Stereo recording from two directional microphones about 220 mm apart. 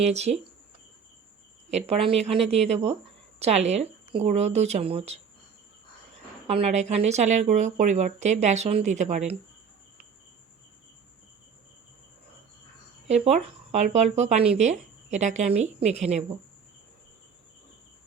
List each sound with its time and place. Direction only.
0.0 s speech: 30° right (ahead or behind)
1.7 s a woman's voice: 25° right (ahead or behind)
6.5 s speech: 30° right (ahead or behind)
13.2 s speech: 30° right (ahead or behind)